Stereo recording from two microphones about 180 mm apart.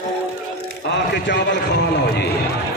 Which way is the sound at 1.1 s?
70° left (ahead or behind).